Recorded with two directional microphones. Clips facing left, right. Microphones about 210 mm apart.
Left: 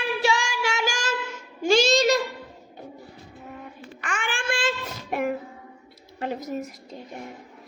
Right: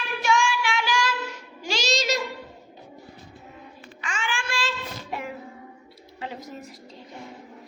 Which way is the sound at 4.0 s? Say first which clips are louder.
Left 1 dB; 55° left (ahead or behind).